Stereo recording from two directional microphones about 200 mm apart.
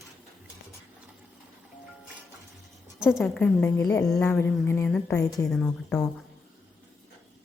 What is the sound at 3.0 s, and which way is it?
A woman's voice, centre (ahead or behind).